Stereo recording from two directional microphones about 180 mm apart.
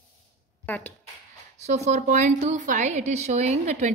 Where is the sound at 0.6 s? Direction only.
10° left (ahead or behind).